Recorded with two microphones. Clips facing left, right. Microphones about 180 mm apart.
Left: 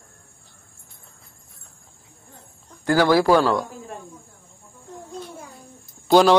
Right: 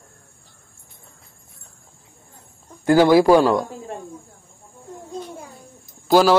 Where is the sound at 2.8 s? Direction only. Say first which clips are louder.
Right 4 dB; 20° right (ahead or behind).